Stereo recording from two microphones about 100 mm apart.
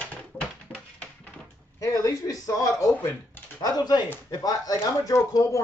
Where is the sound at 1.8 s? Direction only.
35° left (ahead or behind).